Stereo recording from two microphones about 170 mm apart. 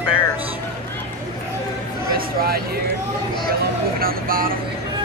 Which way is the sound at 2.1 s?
65° right (ahead or behind).